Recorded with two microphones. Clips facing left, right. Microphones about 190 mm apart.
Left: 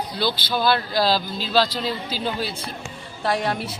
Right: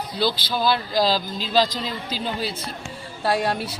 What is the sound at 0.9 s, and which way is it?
A man's voice, 5° left (ahead or behind).